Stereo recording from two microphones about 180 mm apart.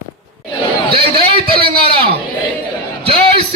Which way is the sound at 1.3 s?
60° right (ahead or behind).